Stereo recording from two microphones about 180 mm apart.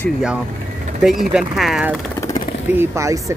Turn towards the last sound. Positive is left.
turn(degrees=-15)  # may be behind; listen again after turning